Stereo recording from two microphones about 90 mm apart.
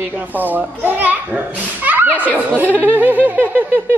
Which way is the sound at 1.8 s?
20° right (ahead or behind).